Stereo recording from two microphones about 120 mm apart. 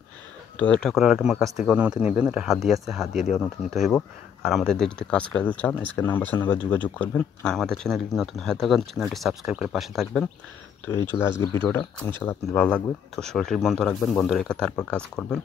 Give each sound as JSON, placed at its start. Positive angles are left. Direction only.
{"t": 0.6, "sound": "speech", "side_deg": 5}
{"t": 11.1, "sound": "speech", "side_deg": 20}